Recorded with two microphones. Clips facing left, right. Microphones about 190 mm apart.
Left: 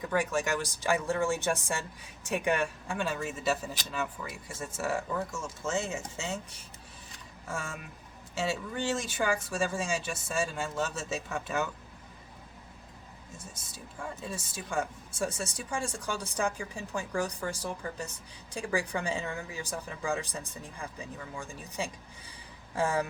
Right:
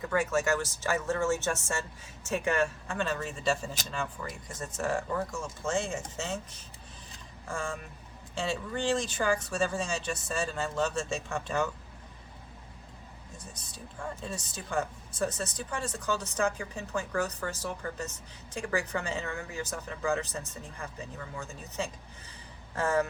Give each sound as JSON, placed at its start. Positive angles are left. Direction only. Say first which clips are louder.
{"t": 0.1, "sound": "speech", "louder": "right 2 dB", "side_deg": 10}
{"t": 13.6, "sound": "speech", "louder": "right 1 dB", "side_deg": 5}